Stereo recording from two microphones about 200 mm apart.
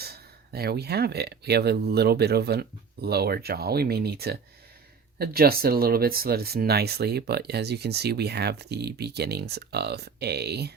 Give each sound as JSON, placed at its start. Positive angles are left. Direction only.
{"t": 0.0, "sound": "speech", "side_deg": -50}